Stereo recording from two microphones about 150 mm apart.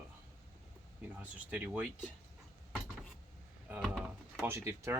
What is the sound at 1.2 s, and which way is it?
Speech, 10° right (ahead or behind).